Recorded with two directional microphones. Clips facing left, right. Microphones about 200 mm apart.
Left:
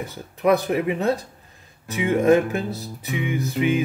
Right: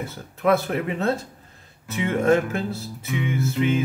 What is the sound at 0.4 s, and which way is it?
Speech, 15° left (ahead or behind).